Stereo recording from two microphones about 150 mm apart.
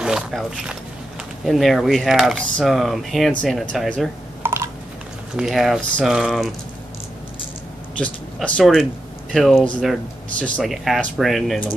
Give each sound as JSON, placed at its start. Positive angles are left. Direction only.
{"t": 0.0, "sound": "speech", "side_deg": 0}
{"t": 4.4, "sound": "a sound", "side_deg": -15}
{"t": 5.3, "sound": "speech", "side_deg": -5}
{"t": 8.5, "sound": "speech", "side_deg": 0}